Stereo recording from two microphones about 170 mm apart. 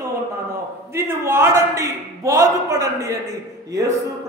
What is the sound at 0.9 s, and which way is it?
A man's voice, 15° right (ahead or behind).